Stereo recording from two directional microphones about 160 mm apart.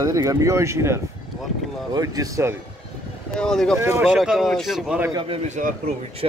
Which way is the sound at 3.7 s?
15° right (ahead or behind).